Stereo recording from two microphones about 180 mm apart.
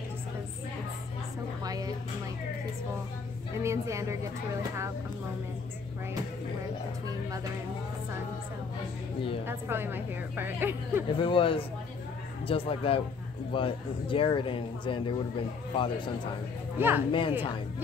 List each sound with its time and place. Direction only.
1.6 s a sound: 20° right (ahead or behind)
3.6 s a woman's voice: 15° right (ahead or behind)
9.5 s a woman's voice: 10° right (ahead or behind)
11.1 s speech: 30° left (ahead or behind)
16.7 s a woman's voice: 10° right (ahead or behind)